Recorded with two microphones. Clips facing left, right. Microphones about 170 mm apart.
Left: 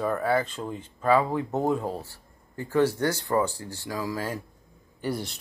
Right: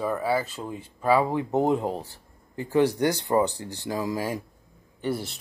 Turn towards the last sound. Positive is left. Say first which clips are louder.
# right 2 dB
turn(degrees=0)  # may be behind; listen again after turning